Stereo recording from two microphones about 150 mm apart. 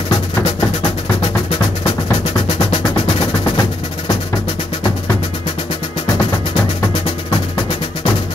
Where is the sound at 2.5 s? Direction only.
35° left (ahead or behind).